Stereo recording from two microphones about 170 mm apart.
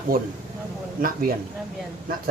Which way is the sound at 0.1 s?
60° right (ahead or behind).